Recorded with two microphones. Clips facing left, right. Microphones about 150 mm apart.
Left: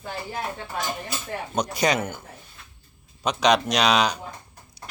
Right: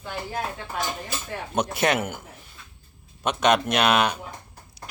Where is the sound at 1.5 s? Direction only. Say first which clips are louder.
Even; 5° right (ahead or behind).